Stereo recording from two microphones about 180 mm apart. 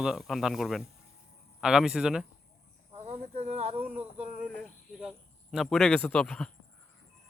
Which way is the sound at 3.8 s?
10° right (ahead or behind).